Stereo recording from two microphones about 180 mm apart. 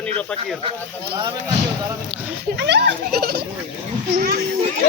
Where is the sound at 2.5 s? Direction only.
70° right (ahead or behind).